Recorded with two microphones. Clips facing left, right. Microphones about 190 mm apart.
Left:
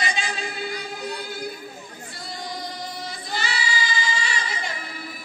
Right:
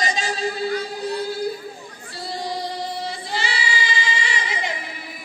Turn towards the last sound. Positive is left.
turn(degrees=-20)  # may be behind; listen again after turning